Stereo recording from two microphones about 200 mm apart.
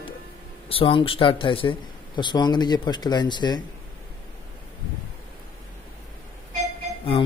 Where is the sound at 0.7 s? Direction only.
25° left (ahead or behind).